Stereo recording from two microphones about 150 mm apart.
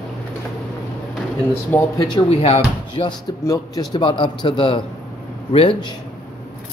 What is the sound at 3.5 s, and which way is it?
A man's voice, 30° left (ahead or behind).